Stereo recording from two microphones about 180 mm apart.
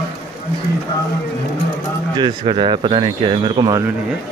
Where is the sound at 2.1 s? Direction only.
25° right (ahead or behind).